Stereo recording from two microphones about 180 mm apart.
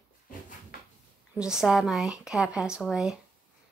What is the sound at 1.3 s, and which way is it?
Speech, 5° right (ahead or behind).